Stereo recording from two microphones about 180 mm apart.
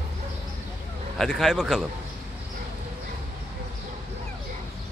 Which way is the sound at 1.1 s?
Centre (ahead or behind).